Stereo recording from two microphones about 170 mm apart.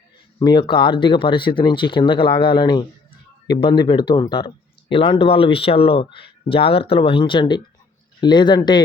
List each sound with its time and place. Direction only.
0.3 s speech: 25° left (ahead or behind)